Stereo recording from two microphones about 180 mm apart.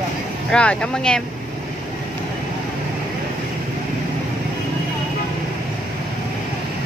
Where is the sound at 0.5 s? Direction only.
5° left (ahead or behind).